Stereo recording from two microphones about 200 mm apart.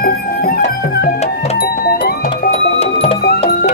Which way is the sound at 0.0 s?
45° left (ahead or behind).